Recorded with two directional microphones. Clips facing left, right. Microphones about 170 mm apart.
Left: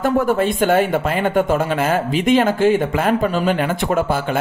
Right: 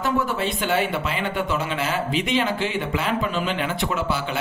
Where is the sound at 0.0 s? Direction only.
50° left (ahead or behind).